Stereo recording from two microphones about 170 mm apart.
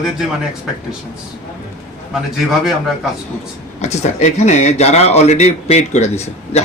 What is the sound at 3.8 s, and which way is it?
A man's voice, 40° left (ahead or behind).